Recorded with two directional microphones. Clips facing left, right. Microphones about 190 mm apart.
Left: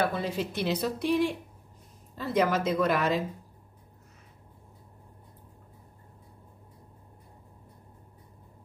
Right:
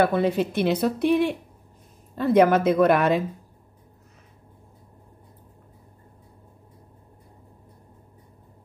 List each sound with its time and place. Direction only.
0.0 s speech: 55° right (ahead or behind)